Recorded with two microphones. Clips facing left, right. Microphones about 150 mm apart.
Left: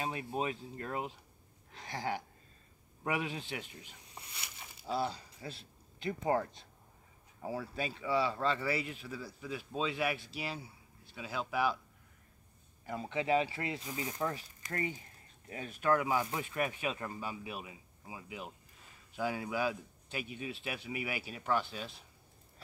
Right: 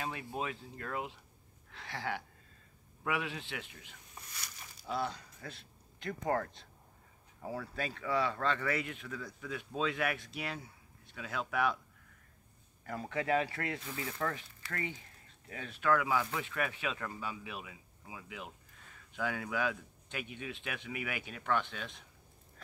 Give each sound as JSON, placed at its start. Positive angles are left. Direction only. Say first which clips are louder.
{"t": 0.0, "sound": "speech", "louder": "left 3 dB", "side_deg": 25}
{"t": 1.7, "sound": "a sound", "louder": "left 2 dB", "side_deg": 40}
{"t": 3.0, "sound": "speech", "louder": "left 1 dB", "side_deg": 40}
{"t": 4.8, "sound": "speech", "louder": "left 2 dB", "side_deg": 30}
{"t": 6.0, "sound": "speech", "louder": "left 2 dB", "side_deg": 15}
{"t": 8.1, "sound": "speech", "louder": "left 1 dB", "side_deg": 30}
{"t": 8.4, "sound": "speech", "louder": "left 1 dB", "side_deg": 5}
{"t": 8.6, "sound": "speech", "louder": "even", "side_deg": 30}
{"t": 13.1, "sound": "speech", "louder": "left 1 dB", "side_deg": 25}
{"t": 13.8, "sound": "speech", "louder": "left 1 dB", "side_deg": 15}
{"t": 14.7, "sound": "speech", "louder": "left 3 dB", "side_deg": 35}